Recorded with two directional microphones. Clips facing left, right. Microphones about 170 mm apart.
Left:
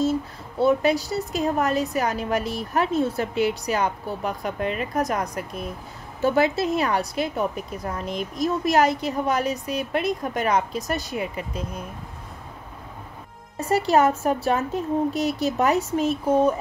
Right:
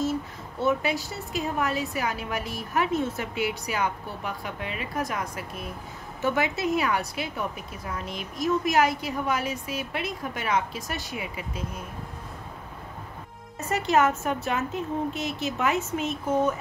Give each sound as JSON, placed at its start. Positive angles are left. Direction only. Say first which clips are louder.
{"t": 0.6, "sound": "a woman's voice", "louder": "left 6 dB", "side_deg": 35}
{"t": 13.6, "sound": "a woman's voice", "louder": "left 4 dB", "side_deg": 35}